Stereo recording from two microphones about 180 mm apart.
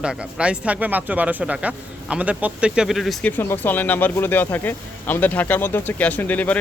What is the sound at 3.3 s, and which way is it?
Speech, 10° left (ahead or behind).